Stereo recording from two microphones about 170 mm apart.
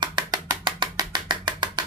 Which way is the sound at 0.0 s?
25° right (ahead or behind).